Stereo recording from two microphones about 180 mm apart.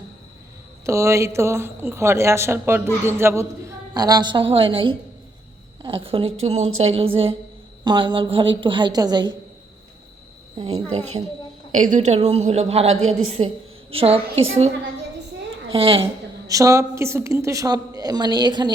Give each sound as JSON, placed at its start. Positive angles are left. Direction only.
{"t": 0.9, "sound": "a woman's voice", "side_deg": -15}
{"t": 10.6, "sound": "a woman's voice", "side_deg": -35}
{"t": 15.7, "sound": "a woman's voice", "side_deg": -30}
{"t": 16.5, "sound": "a woman's voice", "side_deg": -15}